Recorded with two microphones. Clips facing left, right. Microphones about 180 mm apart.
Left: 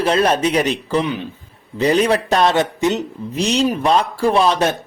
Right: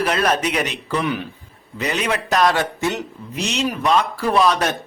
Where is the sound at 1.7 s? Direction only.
35° left (ahead or behind).